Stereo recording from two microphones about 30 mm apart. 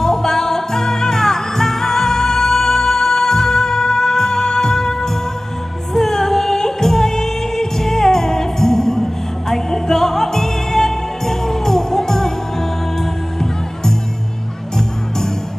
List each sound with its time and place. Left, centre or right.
0.0 s music: centre